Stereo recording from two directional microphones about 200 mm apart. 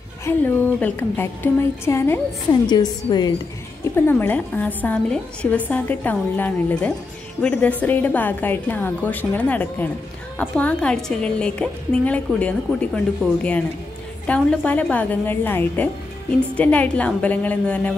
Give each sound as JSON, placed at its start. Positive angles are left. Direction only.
{"t": 0.2, "sound": "a woman's voice", "side_deg": 10}
{"t": 3.9, "sound": "a woman's voice", "side_deg": 10}